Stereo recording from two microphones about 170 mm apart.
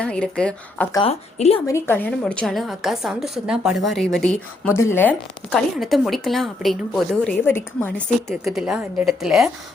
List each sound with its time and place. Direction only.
0.0 s a woman's voice: 5° left (ahead or behind)
1.0 s a woman's voice: 35° left (ahead or behind)
1.6 s a woman's voice: 15° left (ahead or behind); by 9.5 s centre (ahead or behind)